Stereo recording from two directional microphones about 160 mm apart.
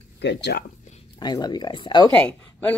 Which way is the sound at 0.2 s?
90° left.